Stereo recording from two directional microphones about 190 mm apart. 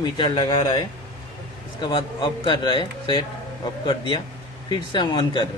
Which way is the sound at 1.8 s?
25° left (ahead or behind).